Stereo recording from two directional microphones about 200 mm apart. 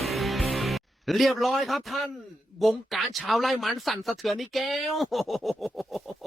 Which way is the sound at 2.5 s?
Centre (ahead or behind).